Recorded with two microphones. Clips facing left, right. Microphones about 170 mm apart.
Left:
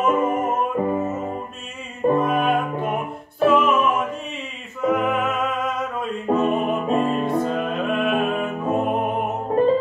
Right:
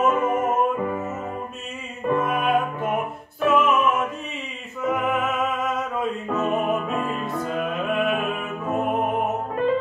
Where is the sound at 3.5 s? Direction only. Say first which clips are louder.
Even; centre (ahead or behind).